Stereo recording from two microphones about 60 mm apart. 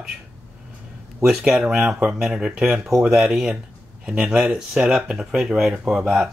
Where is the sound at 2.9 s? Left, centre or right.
Right.